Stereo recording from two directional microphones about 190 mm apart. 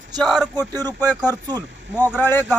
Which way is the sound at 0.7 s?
20° right (ahead or behind).